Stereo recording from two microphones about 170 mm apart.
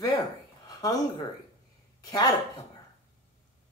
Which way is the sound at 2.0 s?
25° left (ahead or behind).